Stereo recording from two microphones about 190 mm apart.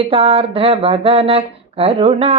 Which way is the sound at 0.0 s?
30° right (ahead or behind).